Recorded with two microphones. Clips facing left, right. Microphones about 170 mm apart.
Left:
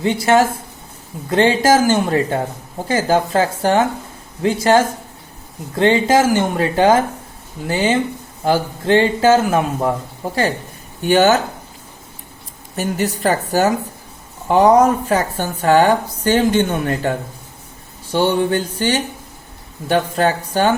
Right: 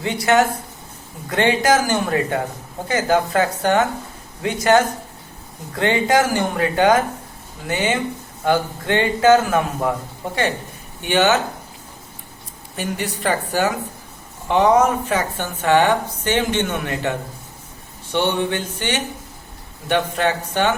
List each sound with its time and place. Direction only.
0.0 s a man's voice: 25° left (ahead or behind)
11.0 s a woman's voice: 40° left (ahead or behind)
12.7 s a woman's voice: 40° left (ahead or behind)